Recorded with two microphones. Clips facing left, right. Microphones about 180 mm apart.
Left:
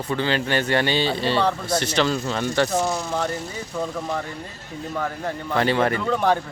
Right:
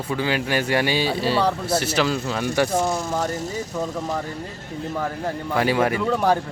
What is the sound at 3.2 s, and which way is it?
Speech, 45° right (ahead or behind).